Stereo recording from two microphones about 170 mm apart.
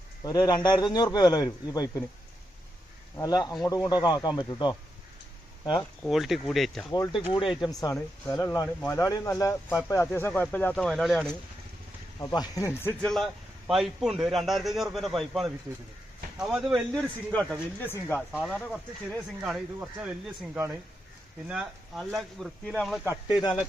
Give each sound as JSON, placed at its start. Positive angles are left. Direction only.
{"t": 0.3, "sound": "speech", "side_deg": 25}
{"t": 3.2, "sound": "speech", "side_deg": 20}
{"t": 6.1, "sound": "speech", "side_deg": 0}
{"t": 6.9, "sound": "speech", "side_deg": 25}
{"t": 12.2, "sound": "speech", "side_deg": 20}
{"t": 13.1, "sound": "speech", "side_deg": 0}